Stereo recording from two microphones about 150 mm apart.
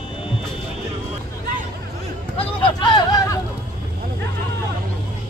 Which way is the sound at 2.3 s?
35° left (ahead or behind).